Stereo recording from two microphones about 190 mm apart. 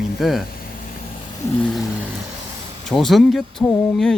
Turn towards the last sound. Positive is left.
turn(degrees=0)  # may be behind; listen again after turning